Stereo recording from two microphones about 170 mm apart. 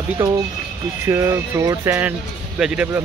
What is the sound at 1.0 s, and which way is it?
Speech, 15° right (ahead or behind).